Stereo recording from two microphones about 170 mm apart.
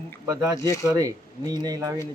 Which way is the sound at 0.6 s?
20° left (ahead or behind).